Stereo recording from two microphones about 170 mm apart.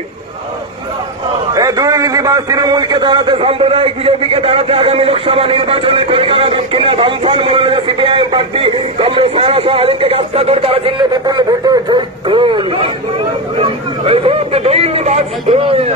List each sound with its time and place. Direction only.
1.5 s a man's voice: 20° right (ahead or behind)